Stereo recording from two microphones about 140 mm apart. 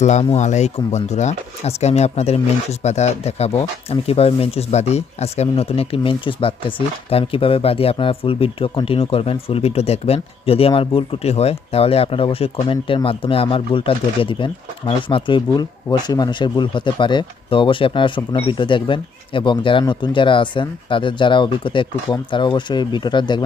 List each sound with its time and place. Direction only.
0.0 s speech: 55° left (ahead or behind); by 23.4 s 35° left (ahead or behind)